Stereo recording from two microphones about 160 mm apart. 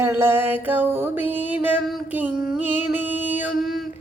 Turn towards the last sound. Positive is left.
turn(degrees=0)  # may be behind; listen again after turning